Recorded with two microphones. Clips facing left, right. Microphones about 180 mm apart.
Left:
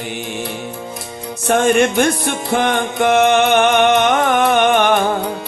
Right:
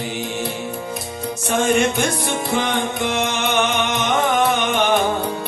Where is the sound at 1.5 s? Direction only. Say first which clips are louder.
Left 5 dB; 60° left (ahead or behind).